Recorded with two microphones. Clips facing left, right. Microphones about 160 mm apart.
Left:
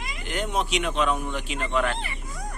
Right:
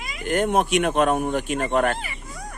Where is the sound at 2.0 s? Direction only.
Centre (ahead or behind).